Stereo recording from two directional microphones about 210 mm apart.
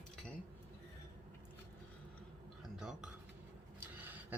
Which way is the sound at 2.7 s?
5° right (ahead or behind).